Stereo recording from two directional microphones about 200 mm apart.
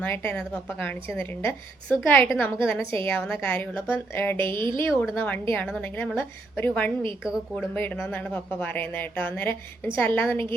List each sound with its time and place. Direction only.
0.0 s speech: 10° left (ahead or behind)
4.4 s speech: 25° right (ahead or behind)
4.8 s speech: 10° left (ahead or behind)
7.2 s speech: 5° right (ahead or behind)
7.5 s speech: 10° left (ahead or behind)